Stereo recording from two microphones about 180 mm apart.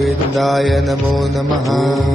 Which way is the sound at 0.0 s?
Centre (ahead or behind).